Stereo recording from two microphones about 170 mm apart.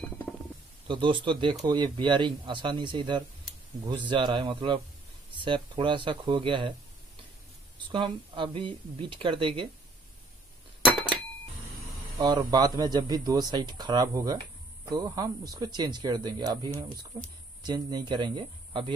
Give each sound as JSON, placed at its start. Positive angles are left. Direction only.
{"t": 0.8, "sound": "speech", "side_deg": -30}
{"t": 7.9, "sound": "speech", "side_deg": -30}
{"t": 12.4, "sound": "speech", "side_deg": -20}
{"t": 17.1, "sound": "speech", "side_deg": -35}
{"t": 17.6, "sound": "speech", "side_deg": -25}